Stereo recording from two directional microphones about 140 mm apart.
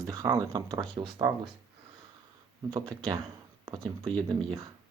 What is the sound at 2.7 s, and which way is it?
Speech, 25° right (ahead or behind).